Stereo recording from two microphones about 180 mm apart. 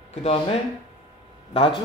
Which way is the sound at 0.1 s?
35° left (ahead or behind).